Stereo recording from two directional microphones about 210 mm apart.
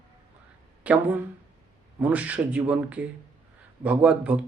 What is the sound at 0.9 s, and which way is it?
Speech, 10° right (ahead or behind).